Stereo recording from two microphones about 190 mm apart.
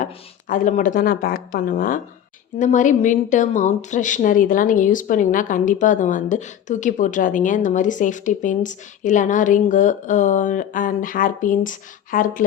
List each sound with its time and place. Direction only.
0.0 s speech: 45° left (ahead or behind)